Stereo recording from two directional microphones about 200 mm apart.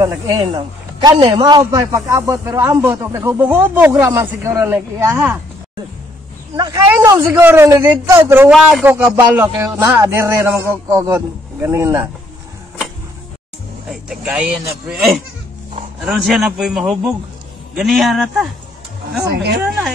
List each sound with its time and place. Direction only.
0.0 s a man's voice: 15° right (ahead or behind)
6.9 s a man's voice: 10° right (ahead or behind)
13.8 s a man's voice: 5° right (ahead or behind)
19.3 s speech: 55° right (ahead or behind)